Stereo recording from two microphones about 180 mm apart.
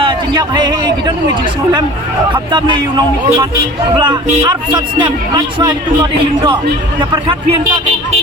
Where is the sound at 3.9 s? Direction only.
25° right (ahead or behind).